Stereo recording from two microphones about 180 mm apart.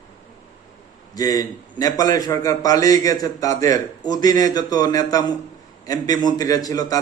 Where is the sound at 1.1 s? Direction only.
20° left (ahead or behind).